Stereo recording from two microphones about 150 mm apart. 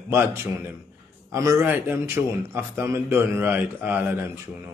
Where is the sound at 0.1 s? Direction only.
15° right (ahead or behind).